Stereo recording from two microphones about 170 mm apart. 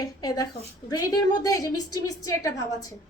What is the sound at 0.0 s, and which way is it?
A woman's voice, 20° left (ahead or behind).